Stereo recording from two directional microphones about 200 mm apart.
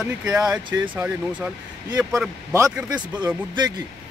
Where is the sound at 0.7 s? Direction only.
20° right (ahead or behind).